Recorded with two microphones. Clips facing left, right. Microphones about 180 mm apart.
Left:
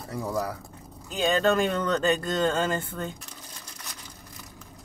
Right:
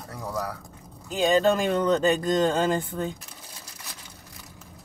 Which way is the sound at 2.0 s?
10° right (ahead or behind).